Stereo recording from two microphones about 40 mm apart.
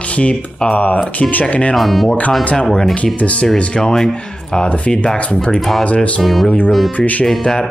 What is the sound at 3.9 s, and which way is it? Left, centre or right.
Speech, centre.